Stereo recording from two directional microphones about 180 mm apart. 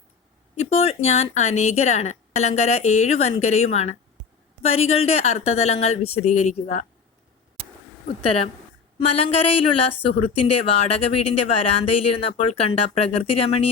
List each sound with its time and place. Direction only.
0.5 s speech: 35° left (ahead or behind)
8.2 s speech: 30° left (ahead or behind)